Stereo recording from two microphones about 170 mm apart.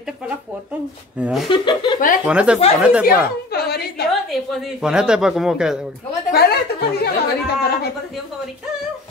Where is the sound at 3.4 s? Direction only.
70° left (ahead or behind).